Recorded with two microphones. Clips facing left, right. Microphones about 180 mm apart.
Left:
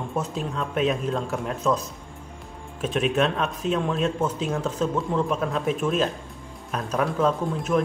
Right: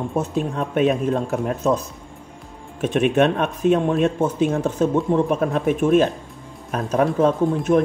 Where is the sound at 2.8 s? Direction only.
60° right (ahead or behind).